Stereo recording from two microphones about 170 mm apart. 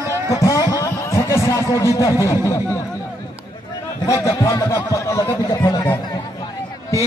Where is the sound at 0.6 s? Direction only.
20° left (ahead or behind).